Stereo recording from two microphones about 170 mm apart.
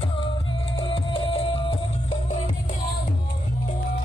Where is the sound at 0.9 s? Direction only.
30° left (ahead or behind).